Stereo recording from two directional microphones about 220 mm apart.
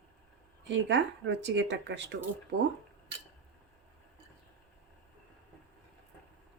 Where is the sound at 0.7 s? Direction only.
55° right (ahead or behind).